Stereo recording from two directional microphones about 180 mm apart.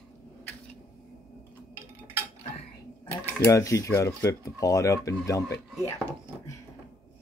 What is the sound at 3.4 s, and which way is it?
Speech, 15° left (ahead or behind).